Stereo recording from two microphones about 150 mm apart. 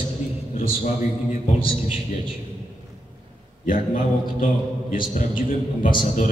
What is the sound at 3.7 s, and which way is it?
A man's voice, 65° left (ahead or behind).